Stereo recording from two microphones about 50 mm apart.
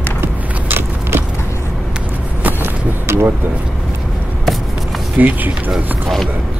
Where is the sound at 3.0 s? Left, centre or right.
Right.